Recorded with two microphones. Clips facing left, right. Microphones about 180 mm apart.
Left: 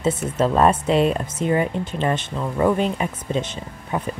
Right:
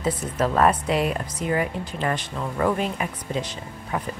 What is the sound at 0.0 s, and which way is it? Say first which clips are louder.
Speech: left 4 dB; 25° left (ahead or behind).